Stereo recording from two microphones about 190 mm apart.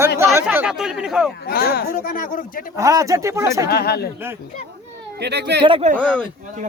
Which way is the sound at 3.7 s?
55° left (ahead or behind).